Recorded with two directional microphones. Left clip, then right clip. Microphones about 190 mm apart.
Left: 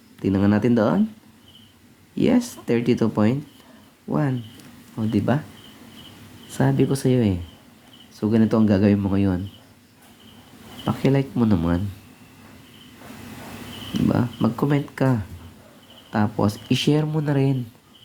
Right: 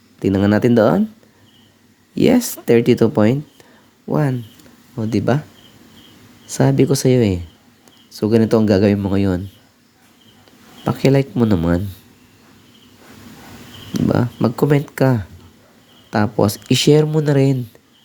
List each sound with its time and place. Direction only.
0.2 s speech: 50° right (ahead or behind)
2.1 s speech: 50° right (ahead or behind)
6.5 s speech: 50° right (ahead or behind)
10.8 s speech: 50° right (ahead or behind)
13.9 s speech: 55° right (ahead or behind)